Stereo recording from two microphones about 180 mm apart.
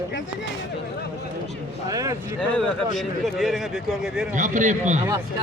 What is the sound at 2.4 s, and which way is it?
A man's voice, 5° left (ahead or behind).